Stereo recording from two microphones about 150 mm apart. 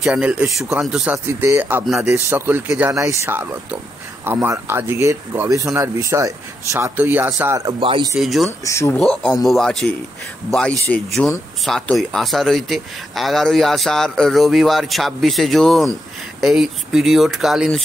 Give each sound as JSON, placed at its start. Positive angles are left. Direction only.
{"t": 0.0, "sound": "speech", "side_deg": -5}
{"t": 7.8, "sound": "speech", "side_deg": -35}
{"t": 8.2, "sound": "speech", "side_deg": 0}
{"t": 8.6, "sound": "speech", "side_deg": 20}
{"t": 8.9, "sound": "speech", "side_deg": 5}